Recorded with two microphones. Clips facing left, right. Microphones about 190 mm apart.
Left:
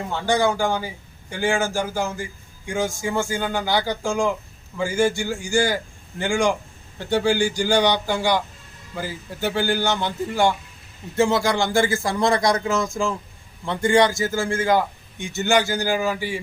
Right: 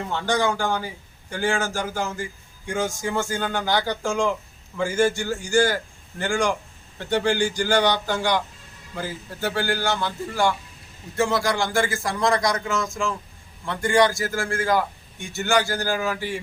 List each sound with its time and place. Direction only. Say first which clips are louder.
0.1 s a man's voice: left 3 dB; 10° left (ahead or behind)